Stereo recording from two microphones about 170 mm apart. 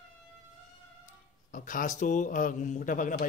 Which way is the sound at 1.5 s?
50° left (ahead or behind).